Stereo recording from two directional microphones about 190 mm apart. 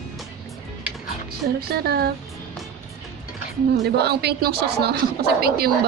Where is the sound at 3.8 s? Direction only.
60° right (ahead or behind).